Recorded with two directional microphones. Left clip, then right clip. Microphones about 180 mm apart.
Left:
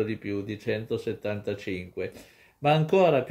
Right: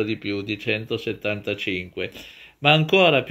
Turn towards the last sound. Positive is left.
turn(degrees=-20)  # may be behind; listen again after turning